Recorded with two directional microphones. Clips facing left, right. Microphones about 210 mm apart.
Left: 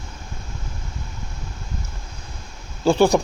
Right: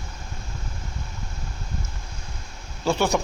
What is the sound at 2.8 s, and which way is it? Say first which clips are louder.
Speech: left 6 dB; 30° left (ahead or behind).